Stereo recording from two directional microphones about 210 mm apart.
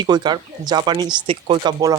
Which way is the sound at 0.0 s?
20° right (ahead or behind).